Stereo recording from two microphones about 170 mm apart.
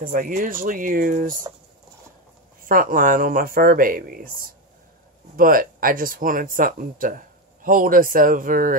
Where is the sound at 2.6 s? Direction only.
55° right (ahead or behind).